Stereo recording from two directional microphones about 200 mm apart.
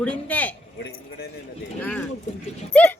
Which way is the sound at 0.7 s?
55° left (ahead or behind).